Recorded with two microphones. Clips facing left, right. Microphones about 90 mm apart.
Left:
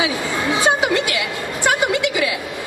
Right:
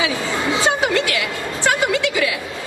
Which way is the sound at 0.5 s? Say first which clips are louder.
Left 2 dB; 20° left (ahead or behind).